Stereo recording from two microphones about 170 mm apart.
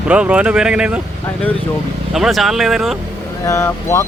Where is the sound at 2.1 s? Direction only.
Centre (ahead or behind).